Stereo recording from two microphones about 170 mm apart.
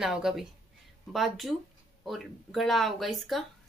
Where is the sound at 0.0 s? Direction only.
Centre (ahead or behind).